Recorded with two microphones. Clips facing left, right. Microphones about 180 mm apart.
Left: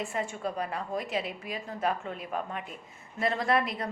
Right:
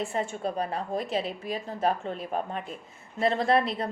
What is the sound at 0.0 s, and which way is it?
A woman's voice, 25° right (ahead or behind).